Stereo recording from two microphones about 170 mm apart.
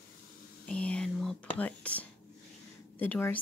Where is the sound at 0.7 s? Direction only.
5° left (ahead or behind).